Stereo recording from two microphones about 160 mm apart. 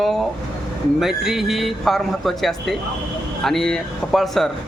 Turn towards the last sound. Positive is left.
turn(degrees=0)  # may be behind; listen again after turning